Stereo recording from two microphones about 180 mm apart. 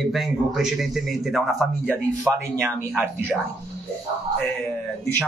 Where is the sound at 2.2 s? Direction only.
10° right (ahead or behind).